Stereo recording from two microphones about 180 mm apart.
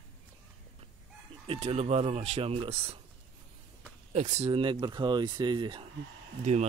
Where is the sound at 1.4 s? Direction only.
35° right (ahead or behind).